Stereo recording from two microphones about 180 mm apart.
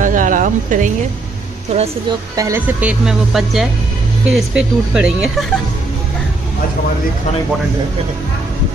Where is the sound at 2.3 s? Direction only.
20° right (ahead or behind).